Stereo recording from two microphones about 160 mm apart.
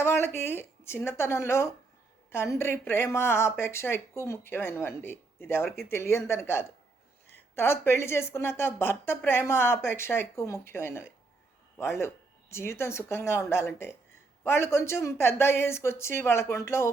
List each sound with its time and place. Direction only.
0.0 s speech: 15° left (ahead or behind)